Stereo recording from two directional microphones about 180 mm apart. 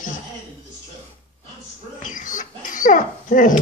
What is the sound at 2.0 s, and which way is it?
Dog, 45° left (ahead or behind).